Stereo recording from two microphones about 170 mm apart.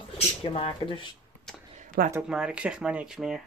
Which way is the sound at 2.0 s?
65° right (ahead or behind).